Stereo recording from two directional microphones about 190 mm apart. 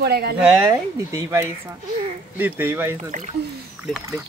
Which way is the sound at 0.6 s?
15° right (ahead or behind).